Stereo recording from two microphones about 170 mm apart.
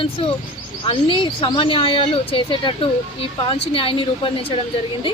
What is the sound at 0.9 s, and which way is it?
A woman's voice, 30° left (ahead or behind).